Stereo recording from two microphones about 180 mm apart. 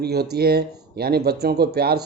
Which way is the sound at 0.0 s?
60° right (ahead or behind).